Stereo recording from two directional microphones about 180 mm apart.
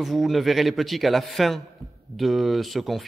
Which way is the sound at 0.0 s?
Centre (ahead or behind).